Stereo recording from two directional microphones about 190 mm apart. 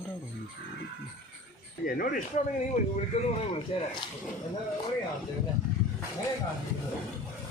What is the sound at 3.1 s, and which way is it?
Speech, 35° left (ahead or behind).